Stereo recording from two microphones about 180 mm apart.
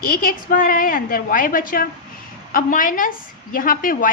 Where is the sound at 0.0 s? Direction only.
50° left (ahead or behind).